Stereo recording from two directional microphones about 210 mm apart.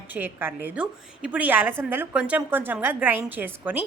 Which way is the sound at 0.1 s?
10° right (ahead or behind).